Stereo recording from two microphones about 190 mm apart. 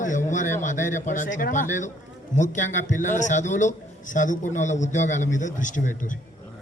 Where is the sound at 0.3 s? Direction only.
40° left (ahead or behind).